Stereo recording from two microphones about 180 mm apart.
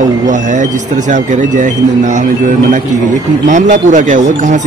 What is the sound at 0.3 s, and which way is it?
Speech, 45° right (ahead or behind).